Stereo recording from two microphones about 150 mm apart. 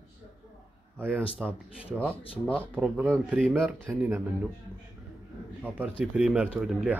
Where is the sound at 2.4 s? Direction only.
10° left (ahead or behind).